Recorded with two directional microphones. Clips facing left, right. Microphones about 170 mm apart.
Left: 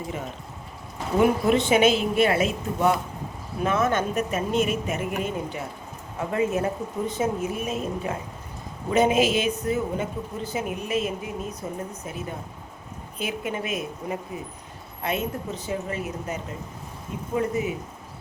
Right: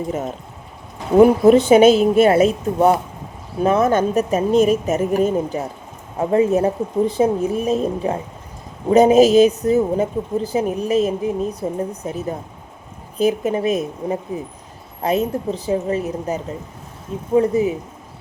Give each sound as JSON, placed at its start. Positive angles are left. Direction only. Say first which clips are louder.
{"t": 1.1, "sound": "a woman's voice", "louder": "right 10 dB", "side_deg": -40}
{"t": 12.0, "sound": "a woman's voice", "louder": "right 8 dB", "side_deg": -40}